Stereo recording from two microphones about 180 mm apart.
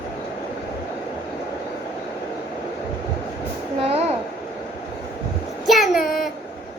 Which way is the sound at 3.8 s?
35° right (ahead or behind).